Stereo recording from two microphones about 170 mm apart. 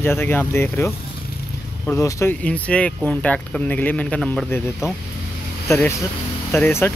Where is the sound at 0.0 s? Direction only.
15° left (ahead or behind).